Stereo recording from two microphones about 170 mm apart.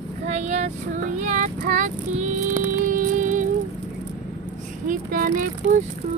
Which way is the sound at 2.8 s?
55° right (ahead or behind).